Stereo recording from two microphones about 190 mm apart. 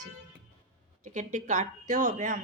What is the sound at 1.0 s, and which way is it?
Speech, 40° right (ahead or behind).